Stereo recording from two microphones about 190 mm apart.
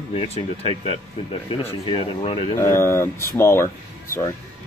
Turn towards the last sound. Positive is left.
turn(degrees=15)  # may be behind; listen again after turning